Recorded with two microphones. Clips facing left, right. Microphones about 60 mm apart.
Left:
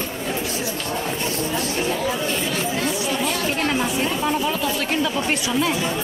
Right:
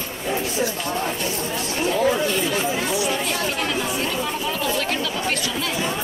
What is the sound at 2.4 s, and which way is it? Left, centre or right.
Chatter, centre.